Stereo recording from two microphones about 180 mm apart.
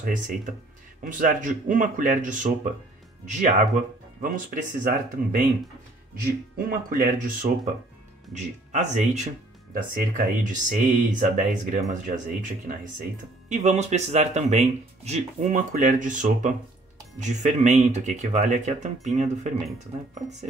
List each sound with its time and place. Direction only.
0.0 s speech: 45° right (ahead or behind)
6.9 s speech: 50° right (ahead or behind)